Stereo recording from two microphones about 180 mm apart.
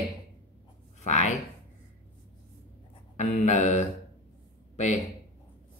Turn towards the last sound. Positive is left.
turn(degrees=40)  # may be behind; listen again after turning